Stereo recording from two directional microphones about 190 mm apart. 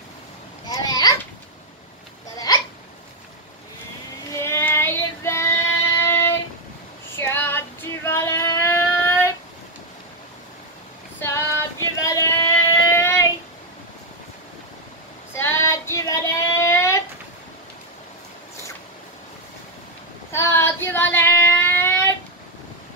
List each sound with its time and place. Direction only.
0.7 s children playing: 20° left (ahead or behind)
2.3 s hiccup: 20° left (ahead or behind)
4.3 s child singing: 15° left (ahead or behind)
5.9 s a sound: 10° left (ahead or behind)
7.2 s child singing: 10° left (ahead or behind)
11.1 s female singing: 15° left (ahead or behind)
15.3 s female singing: 15° left (ahead or behind)
16.6 s a sound: 15° left (ahead or behind)
20.2 s child singing: 15° left (ahead or behind)